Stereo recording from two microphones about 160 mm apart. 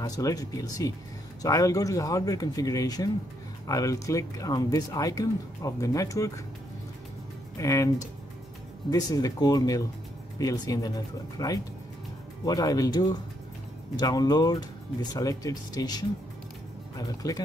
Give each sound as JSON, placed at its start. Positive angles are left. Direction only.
{"t": 0.0, "sound": "speech", "side_deg": 20}
{"t": 7.5, "sound": "speech", "side_deg": 20}